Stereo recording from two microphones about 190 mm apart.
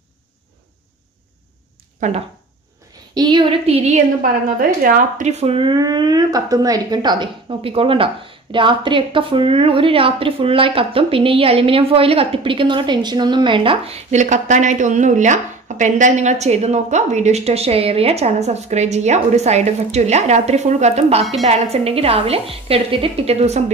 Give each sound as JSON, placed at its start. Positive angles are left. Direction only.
{"t": 2.0, "sound": "speech", "side_deg": -40}
{"t": 3.2, "sound": "a woman's voice", "side_deg": -25}